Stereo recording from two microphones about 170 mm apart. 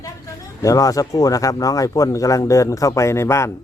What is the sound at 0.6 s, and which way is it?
Speech, 20° left (ahead or behind).